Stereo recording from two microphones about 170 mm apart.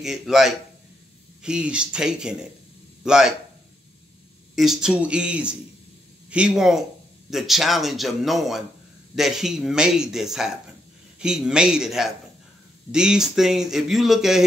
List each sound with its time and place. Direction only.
0.0 s a man's voice: centre (ahead or behind)
4.6 s speech: 5° right (ahead or behind)